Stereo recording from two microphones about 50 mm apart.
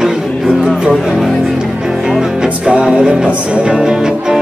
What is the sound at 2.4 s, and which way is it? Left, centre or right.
Music, centre.